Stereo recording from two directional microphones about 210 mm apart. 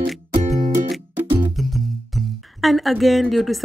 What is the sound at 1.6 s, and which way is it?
Speech, centre (ahead or behind).